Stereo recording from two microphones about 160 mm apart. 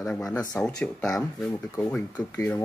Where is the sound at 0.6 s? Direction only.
5° left (ahead or behind).